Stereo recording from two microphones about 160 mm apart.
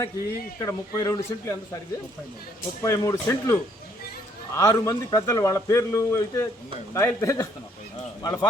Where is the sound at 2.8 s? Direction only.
20° left (ahead or behind).